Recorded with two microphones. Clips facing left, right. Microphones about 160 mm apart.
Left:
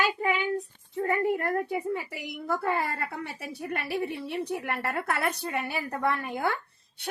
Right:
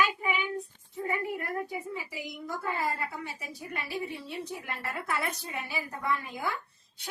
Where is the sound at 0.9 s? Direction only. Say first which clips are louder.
Left 6 dB; 70° left (ahead or behind).